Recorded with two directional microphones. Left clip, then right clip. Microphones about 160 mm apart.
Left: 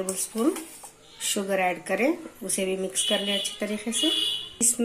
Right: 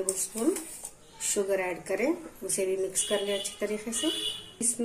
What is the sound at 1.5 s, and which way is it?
Speech, 55° left (ahead or behind).